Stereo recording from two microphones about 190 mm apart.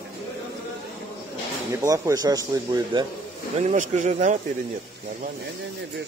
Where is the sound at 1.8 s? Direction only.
15° right (ahead or behind).